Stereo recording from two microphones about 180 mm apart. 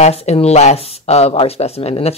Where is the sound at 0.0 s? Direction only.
35° left (ahead or behind).